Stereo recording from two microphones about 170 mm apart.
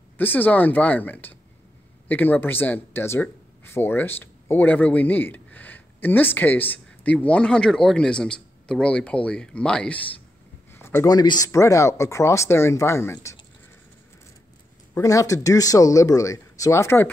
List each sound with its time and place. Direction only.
0.2 s speech: 10° left (ahead or behind)
10.7 s a sound: 15° left (ahead or behind)
11.1 s speech: 25° left (ahead or behind)
15.0 s speech: 20° left (ahead or behind)